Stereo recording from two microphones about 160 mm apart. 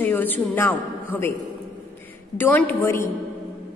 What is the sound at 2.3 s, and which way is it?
Speech, 10° left (ahead or behind).